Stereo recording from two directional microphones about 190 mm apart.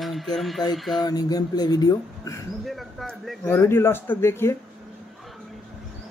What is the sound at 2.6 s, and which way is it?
Speech, centre (ahead or behind).